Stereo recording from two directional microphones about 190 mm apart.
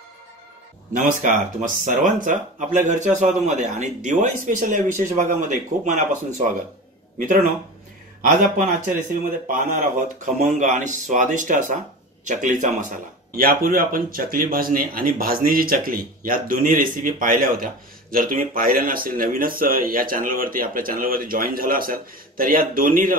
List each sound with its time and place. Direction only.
1.0 s a man's voice: 45° right (ahead or behind)